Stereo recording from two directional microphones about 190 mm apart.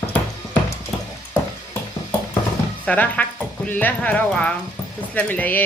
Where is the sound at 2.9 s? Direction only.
10° left (ahead or behind).